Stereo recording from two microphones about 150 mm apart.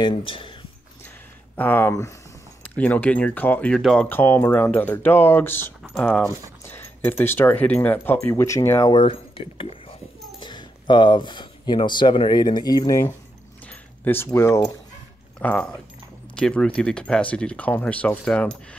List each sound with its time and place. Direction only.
0.0 s speech: 35° left (ahead or behind)
1.6 s speech: 15° left (ahead or behind)
8.9 s speech: 35° left (ahead or behind); by 14.7 s 15° left (ahead or behind)
15.3 s speech: 5° left (ahead or behind)